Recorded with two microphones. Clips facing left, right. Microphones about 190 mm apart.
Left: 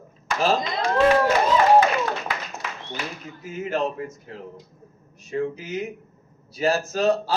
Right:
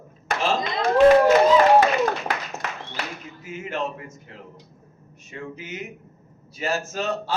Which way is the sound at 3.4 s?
35° left (ahead or behind).